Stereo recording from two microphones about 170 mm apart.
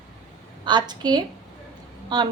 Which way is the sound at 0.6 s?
25° right (ahead or behind).